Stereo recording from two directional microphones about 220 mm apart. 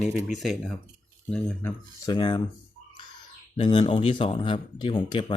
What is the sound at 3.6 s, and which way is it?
Speech, 25° left (ahead or behind).